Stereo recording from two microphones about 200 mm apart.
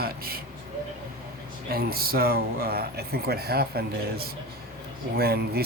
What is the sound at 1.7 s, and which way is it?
Speech, 50° right (ahead or behind).